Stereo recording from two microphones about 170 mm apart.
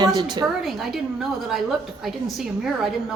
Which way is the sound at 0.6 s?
Centre (ahead or behind).